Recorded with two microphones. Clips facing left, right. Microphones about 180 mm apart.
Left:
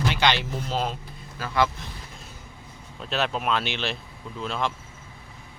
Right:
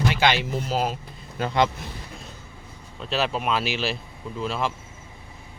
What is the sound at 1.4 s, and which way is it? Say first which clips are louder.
Speech: right 2 dB; 20° right (ahead or behind).